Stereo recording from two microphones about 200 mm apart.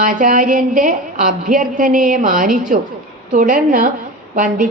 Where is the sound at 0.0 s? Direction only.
40° right (ahead or behind).